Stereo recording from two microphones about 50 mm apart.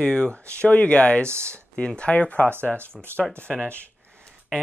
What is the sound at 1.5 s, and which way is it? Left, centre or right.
Speech, left.